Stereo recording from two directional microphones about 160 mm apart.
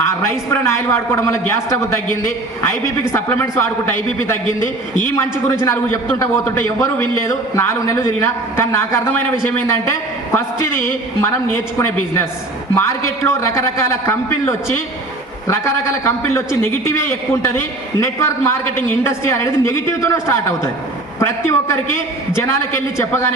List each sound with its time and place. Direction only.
0.0 s a man's voice: 15° left (ahead or behind)